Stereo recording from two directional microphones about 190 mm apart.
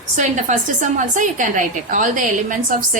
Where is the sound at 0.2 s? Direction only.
40° right (ahead or behind).